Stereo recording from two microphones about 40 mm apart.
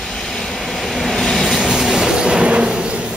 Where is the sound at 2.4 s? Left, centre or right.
Right.